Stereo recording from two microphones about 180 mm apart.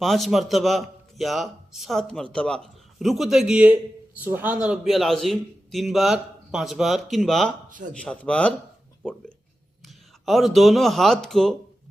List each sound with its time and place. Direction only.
0.0 s a man's voice: centre (ahead or behind)
9.8 s speech: centre (ahead or behind)